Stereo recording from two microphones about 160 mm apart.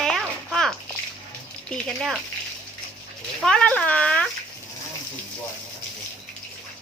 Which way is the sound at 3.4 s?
5° left (ahead or behind).